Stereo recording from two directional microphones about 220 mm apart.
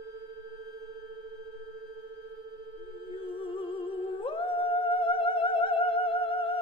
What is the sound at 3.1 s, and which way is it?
Humming, 25° left (ahead or behind).